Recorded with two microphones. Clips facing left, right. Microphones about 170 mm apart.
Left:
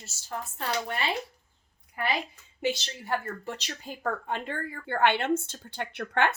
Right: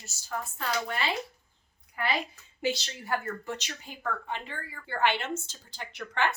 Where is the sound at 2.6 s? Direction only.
25° left (ahead or behind).